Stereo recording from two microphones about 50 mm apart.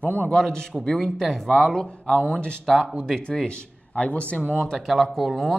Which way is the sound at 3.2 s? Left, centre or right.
Centre.